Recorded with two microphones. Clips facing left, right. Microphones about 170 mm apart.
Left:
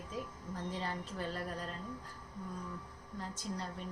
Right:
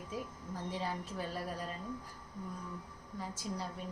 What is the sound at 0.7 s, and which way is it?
A woman's voice, 10° right (ahead or behind).